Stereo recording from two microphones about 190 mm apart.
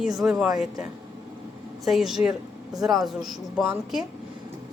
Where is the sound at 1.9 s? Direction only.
Centre (ahead or behind).